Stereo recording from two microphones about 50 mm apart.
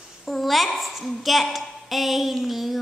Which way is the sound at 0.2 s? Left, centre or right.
Centre.